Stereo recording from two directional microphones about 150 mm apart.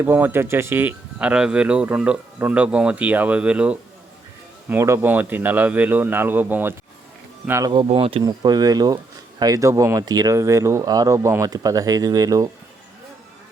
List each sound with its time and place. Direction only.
0.0 s speech: 15° right (ahead or behind)
7.6 s speech: 30° right (ahead or behind)
8.3 s speech: 25° right (ahead or behind)